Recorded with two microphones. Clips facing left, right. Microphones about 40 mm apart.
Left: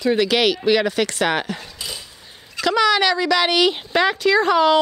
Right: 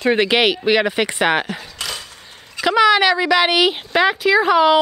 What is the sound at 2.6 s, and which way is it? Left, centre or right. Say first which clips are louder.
Speech: right 3 dB; centre.